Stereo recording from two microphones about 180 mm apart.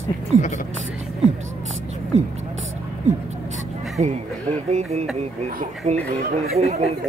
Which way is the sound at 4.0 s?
45° right (ahead or behind).